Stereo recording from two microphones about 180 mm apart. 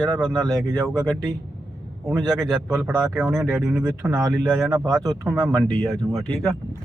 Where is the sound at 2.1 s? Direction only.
Centre (ahead or behind).